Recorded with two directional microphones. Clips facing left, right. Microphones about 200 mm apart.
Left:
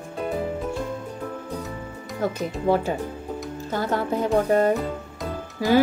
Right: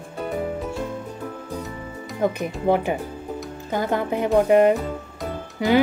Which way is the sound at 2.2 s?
20° right (ahead or behind).